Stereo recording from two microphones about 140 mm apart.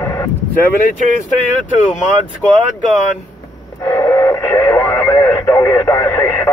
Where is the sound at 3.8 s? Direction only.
20° left (ahead or behind).